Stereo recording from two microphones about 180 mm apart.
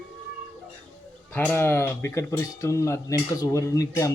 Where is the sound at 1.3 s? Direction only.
10° left (ahead or behind).